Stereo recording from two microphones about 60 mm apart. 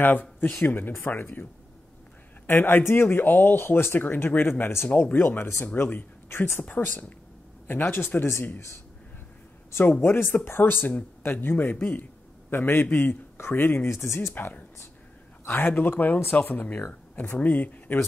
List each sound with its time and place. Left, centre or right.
0.0 s speech: left
6.7 s speech: left
10.0 s a man's voice: left
14.3 s speech: left